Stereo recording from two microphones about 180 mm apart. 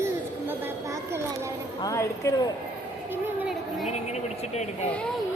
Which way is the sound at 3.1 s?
10° right (ahead or behind).